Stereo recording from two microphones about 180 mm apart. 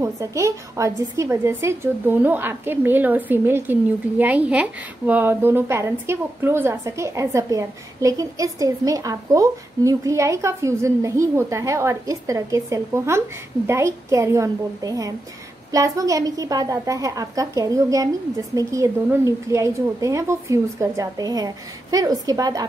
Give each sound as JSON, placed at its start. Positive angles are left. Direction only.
{"t": 0.0, "sound": "a woman's voice", "side_deg": -15}